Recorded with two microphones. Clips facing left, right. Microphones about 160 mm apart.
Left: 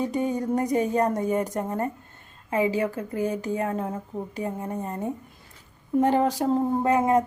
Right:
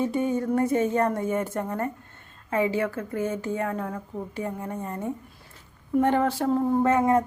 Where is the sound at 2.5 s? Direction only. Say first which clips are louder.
Left 1 dB; 15° left (ahead or behind).